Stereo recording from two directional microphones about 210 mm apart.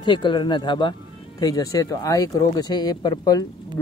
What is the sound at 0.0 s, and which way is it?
Speech, 25° left (ahead or behind).